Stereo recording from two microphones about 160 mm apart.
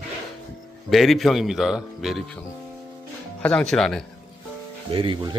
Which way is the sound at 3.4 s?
5° left (ahead or behind).